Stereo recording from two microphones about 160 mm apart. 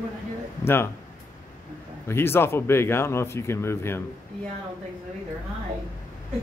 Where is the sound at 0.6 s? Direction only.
15° left (ahead or behind).